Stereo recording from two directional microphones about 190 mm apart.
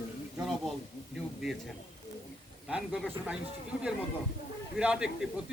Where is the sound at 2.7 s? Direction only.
5° right (ahead or behind).